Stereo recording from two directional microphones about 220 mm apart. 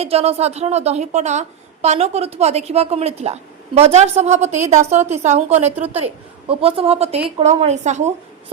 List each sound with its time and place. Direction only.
0.0 s a woman's voice: 25° right (ahead or behind)